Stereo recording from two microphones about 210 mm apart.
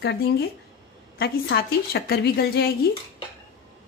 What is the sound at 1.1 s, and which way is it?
A woman's voice, 50° left (ahead or behind).